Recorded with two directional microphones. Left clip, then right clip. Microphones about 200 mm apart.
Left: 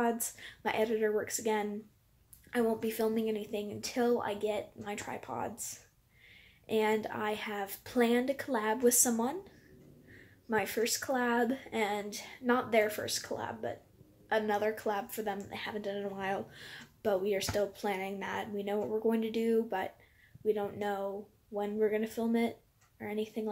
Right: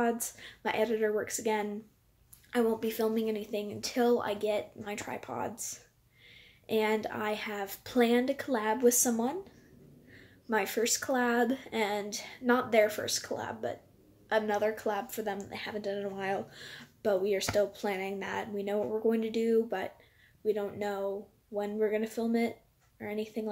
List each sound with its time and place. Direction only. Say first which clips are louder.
0.0 s speech: right 1 dB; 5° left (ahead or behind)
10.5 s speech: right 2 dB; 5° left (ahead or behind)